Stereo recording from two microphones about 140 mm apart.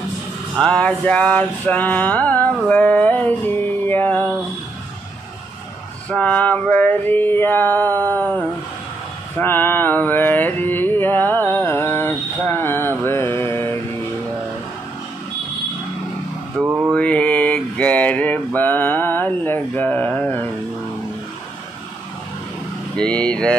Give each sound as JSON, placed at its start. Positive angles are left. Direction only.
{"t": 0.6, "sound": "mantra", "side_deg": 5}
{"t": 6.1, "sound": "mantra", "side_deg": 10}
{"t": 16.5, "sound": "speech", "side_deg": -15}
{"t": 16.9, "sound": "mantra", "side_deg": 10}
{"t": 22.9, "sound": "mantra", "side_deg": 10}